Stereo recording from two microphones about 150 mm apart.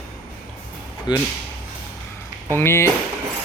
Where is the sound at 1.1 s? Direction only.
30° left (ahead or behind).